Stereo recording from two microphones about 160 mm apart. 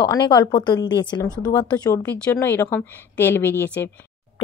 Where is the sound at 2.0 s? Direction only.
15° left (ahead or behind).